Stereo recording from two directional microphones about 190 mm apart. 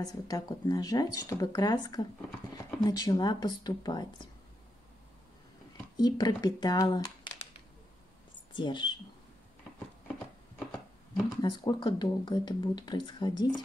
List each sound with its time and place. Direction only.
0.0 s speech: 20° left (ahead or behind)
5.9 s speech: 20° left (ahead or behind)
8.5 s speech: 25° left (ahead or behind)
11.4 s speech: 20° left (ahead or behind)